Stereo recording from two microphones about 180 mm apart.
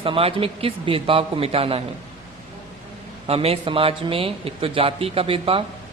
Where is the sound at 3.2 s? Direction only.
35° right (ahead or behind).